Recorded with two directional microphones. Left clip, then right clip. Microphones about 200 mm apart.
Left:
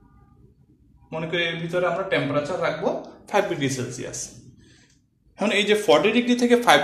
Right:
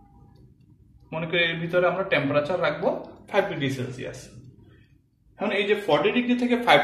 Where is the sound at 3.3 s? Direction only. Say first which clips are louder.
Left 2 dB; 35° left (ahead or behind).